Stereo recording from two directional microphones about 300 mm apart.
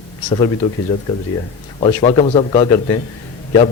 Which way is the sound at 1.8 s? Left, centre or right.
Centre.